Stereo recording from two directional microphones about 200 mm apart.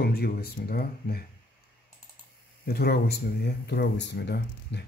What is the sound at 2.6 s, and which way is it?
Speech, 50° left (ahead or behind).